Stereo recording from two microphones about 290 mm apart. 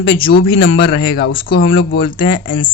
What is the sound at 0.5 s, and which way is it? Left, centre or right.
Speech, left.